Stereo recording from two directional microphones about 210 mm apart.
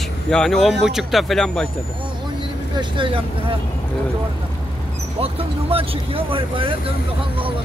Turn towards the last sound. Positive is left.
turn(degrees=-25)  # may be behind; listen again after turning